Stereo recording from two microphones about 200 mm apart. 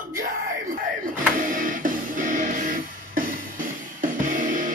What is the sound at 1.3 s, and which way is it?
Music, 45° right (ahead or behind).